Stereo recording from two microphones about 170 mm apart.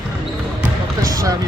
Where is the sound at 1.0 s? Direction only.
20° right (ahead or behind).